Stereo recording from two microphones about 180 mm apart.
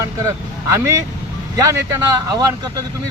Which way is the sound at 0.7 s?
15° right (ahead or behind).